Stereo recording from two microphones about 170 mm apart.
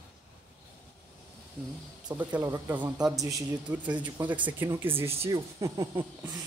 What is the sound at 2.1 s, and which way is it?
A man's voice, 15° right (ahead or behind).